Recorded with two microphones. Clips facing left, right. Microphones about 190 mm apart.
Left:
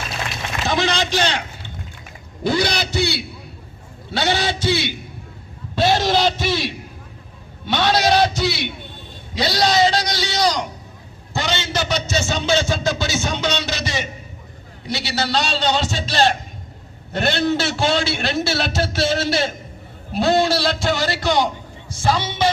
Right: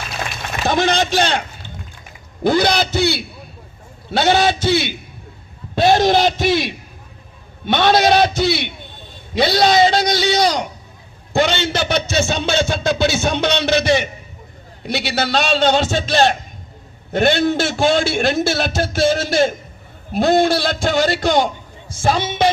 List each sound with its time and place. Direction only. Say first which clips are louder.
0.6 s a man's voice: right 4 dB; 55° right (ahead or behind)
5.7 s a sound: right 4 dB; 50° right (ahead or behind)
9.3 s a man's voice: right 4 dB; 55° right (ahead or behind)
11.3 s music: right 6 dB; 60° right (ahead or behind)
14.8 s a man's voice: right 3 dB; 55° right (ahead or behind)